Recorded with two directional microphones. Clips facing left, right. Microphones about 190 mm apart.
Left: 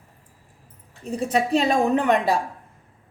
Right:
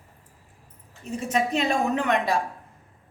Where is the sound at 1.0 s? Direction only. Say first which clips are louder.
Left 3 dB; 35° left (ahead or behind).